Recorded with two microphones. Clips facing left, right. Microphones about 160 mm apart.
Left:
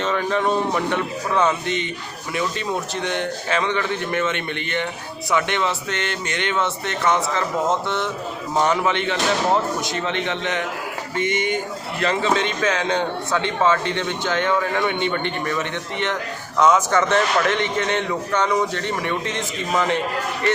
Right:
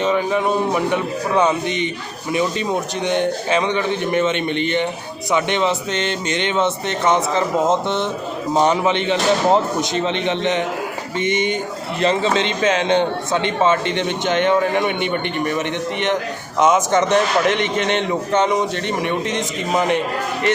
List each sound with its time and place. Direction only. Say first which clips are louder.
0.0 s a man's voice: right 3 dB; 15° right (ahead or behind)